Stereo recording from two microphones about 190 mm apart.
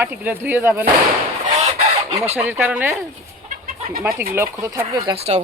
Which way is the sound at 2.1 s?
35° right (ahead or behind).